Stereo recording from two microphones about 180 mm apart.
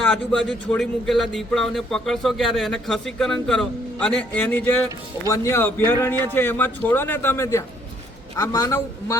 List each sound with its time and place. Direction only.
0.0 s a man's voice: 5° left (ahead or behind)